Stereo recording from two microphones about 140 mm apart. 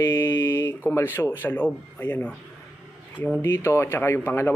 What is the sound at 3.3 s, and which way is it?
Speech, 15° left (ahead or behind).